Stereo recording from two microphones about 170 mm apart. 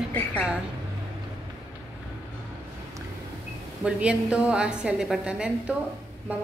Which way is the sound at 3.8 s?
5° right (ahead or behind).